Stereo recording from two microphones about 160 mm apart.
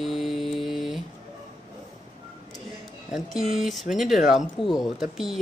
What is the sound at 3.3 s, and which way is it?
Speech, centre (ahead or behind).